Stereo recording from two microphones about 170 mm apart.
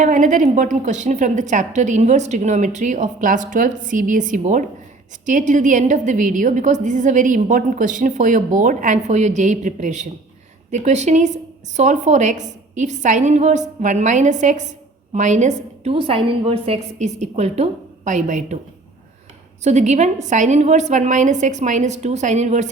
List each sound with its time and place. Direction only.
0.0 s a woman's voice: 50° right (ahead or behind)
19.6 s a woman's voice: 40° right (ahead or behind)